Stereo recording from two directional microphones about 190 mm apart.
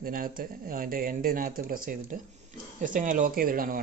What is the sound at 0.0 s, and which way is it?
Speech, 50° right (ahead or behind).